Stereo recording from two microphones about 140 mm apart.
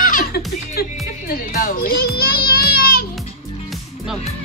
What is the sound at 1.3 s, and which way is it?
Music, 90° left.